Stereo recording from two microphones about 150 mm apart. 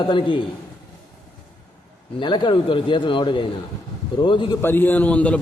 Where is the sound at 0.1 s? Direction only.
35° left (ahead or behind).